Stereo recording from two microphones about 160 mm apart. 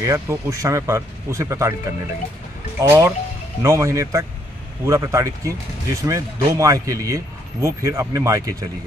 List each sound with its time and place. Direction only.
0.0 s a man's voice: 20° right (ahead or behind)